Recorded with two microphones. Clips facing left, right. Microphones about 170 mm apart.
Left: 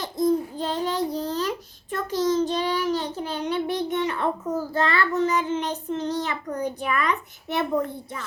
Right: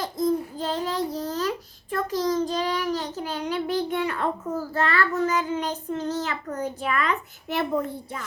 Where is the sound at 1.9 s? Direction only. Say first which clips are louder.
Left 1 dB; 25° left (ahead or behind).